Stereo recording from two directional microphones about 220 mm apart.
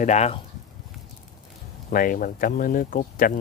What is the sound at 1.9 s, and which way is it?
Speech, 40° left (ahead or behind).